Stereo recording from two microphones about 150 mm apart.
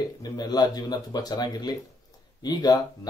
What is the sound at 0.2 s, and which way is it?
Speech, 25° left (ahead or behind).